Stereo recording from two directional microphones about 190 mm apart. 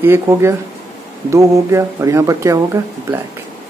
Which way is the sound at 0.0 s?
15° right (ahead or behind).